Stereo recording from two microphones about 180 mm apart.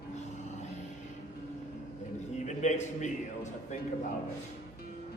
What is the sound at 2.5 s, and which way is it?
A man's voice, 40° left (ahead or behind).